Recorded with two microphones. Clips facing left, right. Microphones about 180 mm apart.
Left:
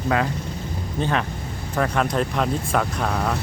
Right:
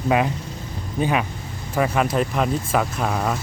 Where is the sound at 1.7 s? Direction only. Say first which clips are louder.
Right 2 dB; 5° right (ahead or behind).